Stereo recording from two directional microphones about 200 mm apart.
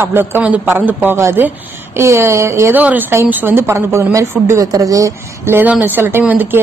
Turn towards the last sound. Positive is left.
turn(degrees=-10)  # may be behind; listen again after turning